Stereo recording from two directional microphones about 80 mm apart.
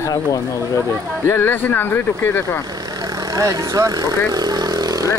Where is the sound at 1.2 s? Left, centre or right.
Left.